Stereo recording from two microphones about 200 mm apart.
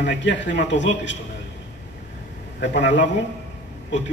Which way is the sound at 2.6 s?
60° left (ahead or behind).